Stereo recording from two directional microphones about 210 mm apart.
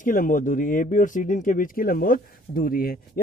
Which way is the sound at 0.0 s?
40° left (ahead or behind).